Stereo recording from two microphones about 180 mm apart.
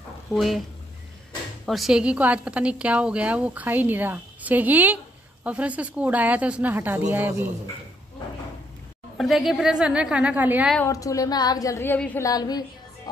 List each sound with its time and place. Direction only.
0.3 s a woman's voice: centre (ahead or behind)
1.7 s a woman's voice: centre (ahead or behind)
9.1 s a woman's voice: centre (ahead or behind)
10.9 s a woman's voice: 20° left (ahead or behind)
12.3 s a woman's voice: 20° left (ahead or behind)